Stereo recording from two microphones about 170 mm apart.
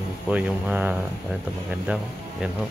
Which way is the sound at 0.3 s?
10° right (ahead or behind).